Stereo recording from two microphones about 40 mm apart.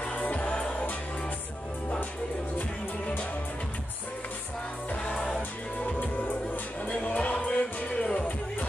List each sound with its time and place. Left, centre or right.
0.0 s music: left
5.1 s music: centre
5.9 s music: left
6.9 s music: left